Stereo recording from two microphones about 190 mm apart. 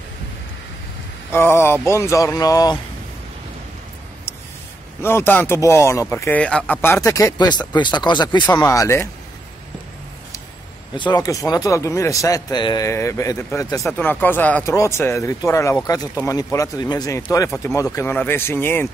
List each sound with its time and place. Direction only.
1.3 s speech: 10° left (ahead or behind)
5.0 s speech: 10° left (ahead or behind)
11.0 s speech: 20° left (ahead or behind)